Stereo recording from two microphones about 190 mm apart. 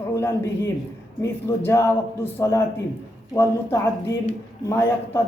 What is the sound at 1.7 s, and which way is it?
A man's voice, 15° left (ahead or behind).